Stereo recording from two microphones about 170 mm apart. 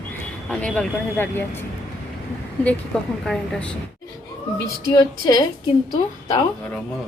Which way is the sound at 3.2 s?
5° left (ahead or behind).